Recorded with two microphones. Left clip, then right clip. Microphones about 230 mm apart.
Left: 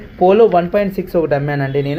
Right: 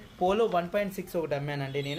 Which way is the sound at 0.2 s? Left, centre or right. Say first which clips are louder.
Left 16 dB; right.